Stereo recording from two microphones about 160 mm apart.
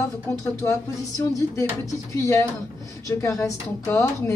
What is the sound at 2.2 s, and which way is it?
Speech, 20° left (ahead or behind).